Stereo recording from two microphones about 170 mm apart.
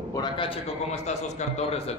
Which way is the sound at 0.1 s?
30° left (ahead or behind).